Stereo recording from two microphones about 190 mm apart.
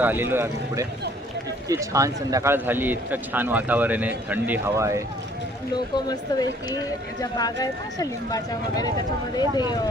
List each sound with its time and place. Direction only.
0.0 s speech: 10° right (ahead or behind)
5.7 s speech: 20° left (ahead or behind)